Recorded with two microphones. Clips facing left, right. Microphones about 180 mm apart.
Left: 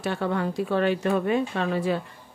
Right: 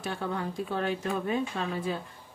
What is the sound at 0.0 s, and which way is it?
A woman's voice, 70° left (ahead or behind).